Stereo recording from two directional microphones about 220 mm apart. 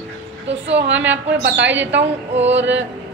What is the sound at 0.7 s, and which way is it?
A woman's voice, 55° right (ahead or behind).